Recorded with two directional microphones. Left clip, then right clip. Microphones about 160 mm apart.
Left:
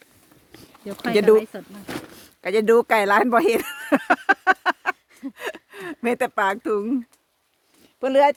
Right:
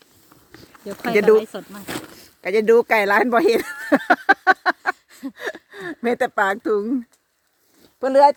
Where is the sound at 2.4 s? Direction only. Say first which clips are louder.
Right 2 dB; centre (ahead or behind); by 4.9 s 20° right (ahead or behind).